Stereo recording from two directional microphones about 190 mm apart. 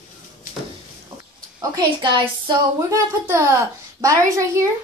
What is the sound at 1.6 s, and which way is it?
A woman's voice, 25° right (ahead or behind).